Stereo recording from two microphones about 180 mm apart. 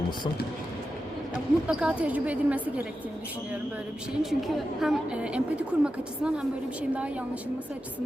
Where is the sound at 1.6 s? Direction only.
5° right (ahead or behind).